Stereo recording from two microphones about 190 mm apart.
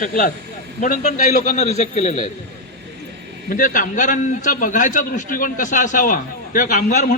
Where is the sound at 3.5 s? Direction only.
45° left (ahead or behind).